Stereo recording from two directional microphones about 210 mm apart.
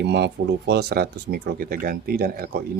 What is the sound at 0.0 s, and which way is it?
Speech, 55° right (ahead or behind).